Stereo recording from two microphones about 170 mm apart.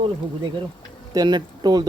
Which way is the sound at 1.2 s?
25° right (ahead or behind).